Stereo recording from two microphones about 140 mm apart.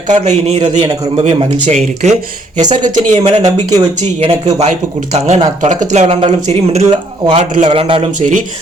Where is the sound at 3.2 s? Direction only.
45° right (ahead or behind).